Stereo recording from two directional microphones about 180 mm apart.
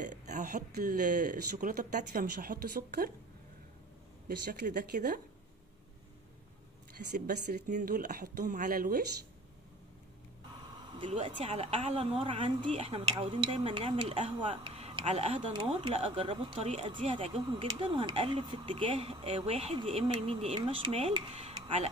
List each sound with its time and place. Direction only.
0.0 s speech: 45° right (ahead or behind)
4.3 s speech: 60° right (ahead or behind)
7.2 s speech: 60° right (ahead or behind)
11.0 s speech: 30° right (ahead or behind)
21.5 s a sound: 30° right (ahead or behind)